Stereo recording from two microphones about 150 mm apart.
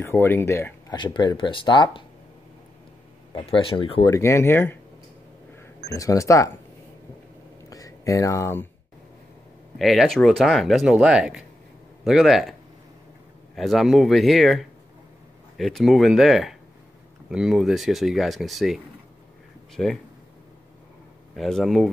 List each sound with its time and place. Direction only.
0.0 s speech: 15° left (ahead or behind)
0.9 s speech: 30° left (ahead or behind)
3.3 s speech: 35° left (ahead or behind)
4.1 s speech: 20° left (ahead or behind)
5.9 s speech: 20° left (ahead or behind)
7.7 s a sound: 20° left (ahead or behind)
9.8 s speech: centre (ahead or behind)
13.6 s speech: centre (ahead or behind)
21.4 s speech: centre (ahead or behind)